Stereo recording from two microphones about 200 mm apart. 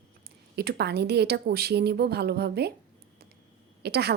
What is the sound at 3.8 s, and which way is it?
Speech, 55° right (ahead or behind).